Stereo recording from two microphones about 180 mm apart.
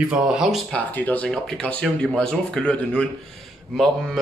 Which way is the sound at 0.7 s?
10° left (ahead or behind).